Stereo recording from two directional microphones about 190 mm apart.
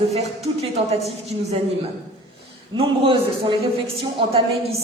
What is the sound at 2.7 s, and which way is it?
Speech, 30° right (ahead or behind).